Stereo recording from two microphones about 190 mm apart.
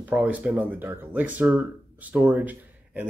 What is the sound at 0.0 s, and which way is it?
Speech, 5° right (ahead or behind).